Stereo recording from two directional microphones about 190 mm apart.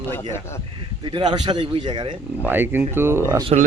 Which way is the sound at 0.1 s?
15° left (ahead or behind).